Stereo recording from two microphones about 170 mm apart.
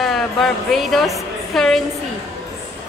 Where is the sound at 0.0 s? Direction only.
Centre (ahead or behind).